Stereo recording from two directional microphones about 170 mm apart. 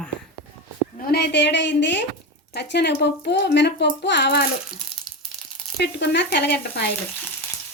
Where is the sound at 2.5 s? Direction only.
80° left.